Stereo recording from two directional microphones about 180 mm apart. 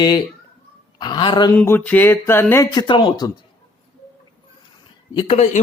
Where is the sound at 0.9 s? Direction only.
25° left (ahead or behind).